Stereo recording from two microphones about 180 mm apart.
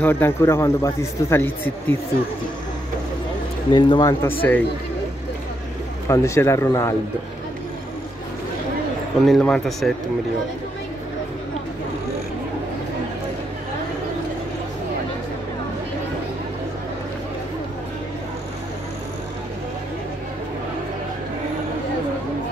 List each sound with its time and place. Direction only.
0.0 s a man's voice: 10° left (ahead or behind)
3.7 s speech: 25° left (ahead or behind)
4.4 s a man's voice: 10° left (ahead or behind)
6.0 s a man's voice: 15° left (ahead or behind)
9.2 s speech: 5° left (ahead or behind)